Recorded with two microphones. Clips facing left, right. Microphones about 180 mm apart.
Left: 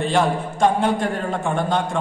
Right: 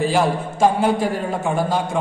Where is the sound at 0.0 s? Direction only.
5° right (ahead or behind).